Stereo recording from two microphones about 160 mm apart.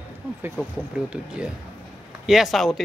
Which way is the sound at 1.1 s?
5° right (ahead or behind).